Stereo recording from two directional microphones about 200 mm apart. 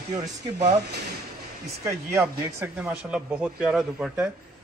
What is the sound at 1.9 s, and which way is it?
Speech, 15° right (ahead or behind).